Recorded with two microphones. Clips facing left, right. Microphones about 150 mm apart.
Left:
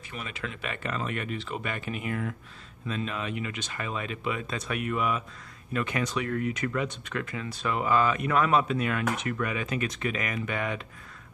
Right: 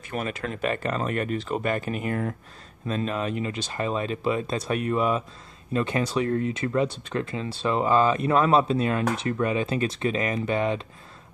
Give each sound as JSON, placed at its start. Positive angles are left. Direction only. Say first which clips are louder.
{"t": 0.1, "sound": "speech", "louder": "right 8 dB", "side_deg": -45}